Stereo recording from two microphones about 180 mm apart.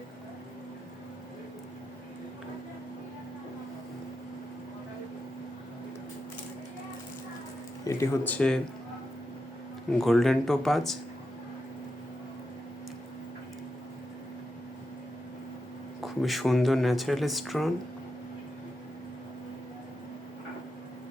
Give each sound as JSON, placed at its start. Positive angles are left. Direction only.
{"t": 7.9, "sound": "speech", "side_deg": 15}
{"t": 10.0, "sound": "speech", "side_deg": 0}
{"t": 16.0, "sound": "speech", "side_deg": 0}